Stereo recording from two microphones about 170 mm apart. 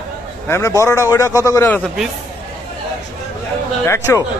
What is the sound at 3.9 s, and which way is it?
Speech, 15° left (ahead or behind).